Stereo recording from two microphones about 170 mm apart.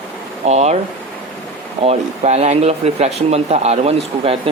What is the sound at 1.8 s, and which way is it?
Speech, 40° right (ahead or behind).